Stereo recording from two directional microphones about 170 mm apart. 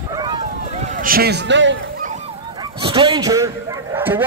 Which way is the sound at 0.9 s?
60° right (ahead or behind).